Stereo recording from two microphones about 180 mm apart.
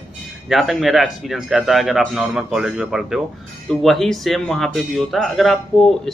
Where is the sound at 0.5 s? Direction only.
Centre (ahead or behind).